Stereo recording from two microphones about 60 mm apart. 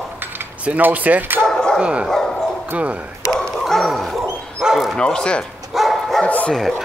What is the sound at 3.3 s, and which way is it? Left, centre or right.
Bow-wow, centre.